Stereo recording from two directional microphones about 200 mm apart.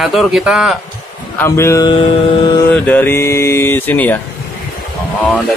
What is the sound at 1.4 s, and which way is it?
Speech, 15° left (ahead or behind).